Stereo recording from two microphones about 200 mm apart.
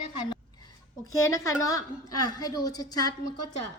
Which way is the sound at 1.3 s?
15° left (ahead or behind).